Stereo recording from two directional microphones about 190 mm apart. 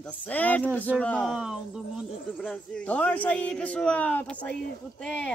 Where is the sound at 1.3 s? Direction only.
5° right (ahead or behind).